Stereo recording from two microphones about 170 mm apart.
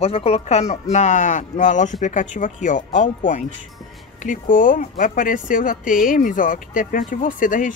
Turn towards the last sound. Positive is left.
turn(degrees=50)  # may be behind; listen again after turning